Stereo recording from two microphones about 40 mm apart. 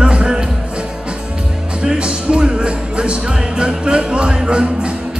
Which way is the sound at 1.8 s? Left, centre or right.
Right.